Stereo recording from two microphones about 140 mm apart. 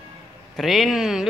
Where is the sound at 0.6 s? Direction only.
Centre (ahead or behind).